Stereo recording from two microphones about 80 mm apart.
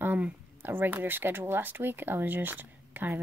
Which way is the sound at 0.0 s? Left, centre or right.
Right.